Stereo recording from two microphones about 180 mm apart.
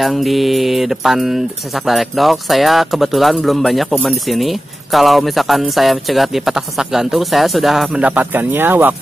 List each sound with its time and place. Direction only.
0.0 s speech: centre (ahead or behind)